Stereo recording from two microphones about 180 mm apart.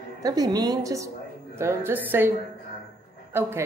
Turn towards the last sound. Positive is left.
turn(degrees=-15)  # may be behind; listen again after turning